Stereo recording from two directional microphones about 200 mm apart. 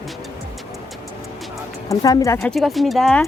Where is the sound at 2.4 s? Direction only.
Centre (ahead or behind).